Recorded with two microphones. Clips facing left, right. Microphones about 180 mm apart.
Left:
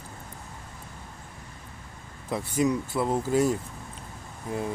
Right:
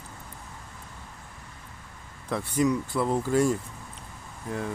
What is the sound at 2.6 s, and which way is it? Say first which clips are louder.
Speech: even; 25° left (ahead or behind).